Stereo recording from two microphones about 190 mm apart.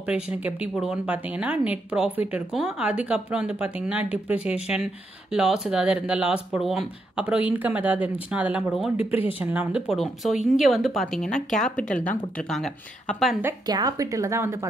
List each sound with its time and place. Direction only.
0.0 s speech: 5° right (ahead or behind)
13.4 s speech: 15° right (ahead or behind)